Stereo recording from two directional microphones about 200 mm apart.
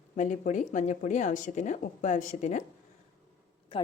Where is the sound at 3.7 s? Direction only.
25° left (ahead or behind).